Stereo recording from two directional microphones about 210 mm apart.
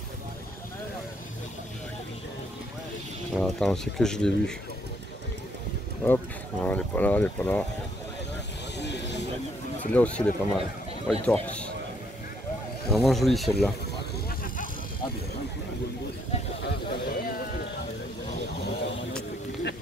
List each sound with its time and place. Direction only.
3.3 s speech: centre (ahead or behind)
6.0 s speech: 10° left (ahead or behind)
8.7 s a sound: 55° left (ahead or behind)
9.9 s speech: 5° left (ahead or behind)
12.9 s speech: centre (ahead or behind)
16.6 s a sound: 45° left (ahead or behind)